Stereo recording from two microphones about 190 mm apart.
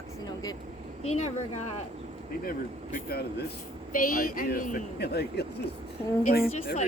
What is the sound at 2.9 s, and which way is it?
Speech, 55° left (ahead or behind).